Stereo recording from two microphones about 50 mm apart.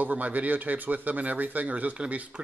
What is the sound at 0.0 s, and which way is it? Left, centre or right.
Speech, right.